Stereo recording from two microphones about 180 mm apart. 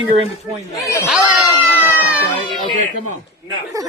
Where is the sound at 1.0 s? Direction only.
5° right (ahead or behind).